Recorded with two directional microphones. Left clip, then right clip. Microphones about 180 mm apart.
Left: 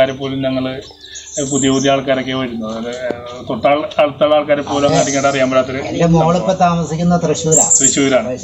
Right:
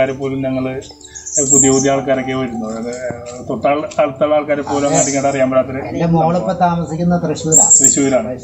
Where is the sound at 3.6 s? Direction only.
5° right (ahead or behind).